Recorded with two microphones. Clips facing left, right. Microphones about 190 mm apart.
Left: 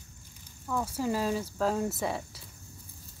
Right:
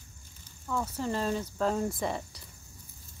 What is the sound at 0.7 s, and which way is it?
Speech, 10° left (ahead or behind).